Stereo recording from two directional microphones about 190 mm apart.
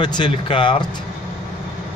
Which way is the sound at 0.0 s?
25° left (ahead or behind).